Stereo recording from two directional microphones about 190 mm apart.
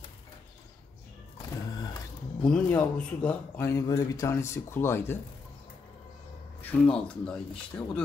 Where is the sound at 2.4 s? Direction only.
5° left (ahead or behind).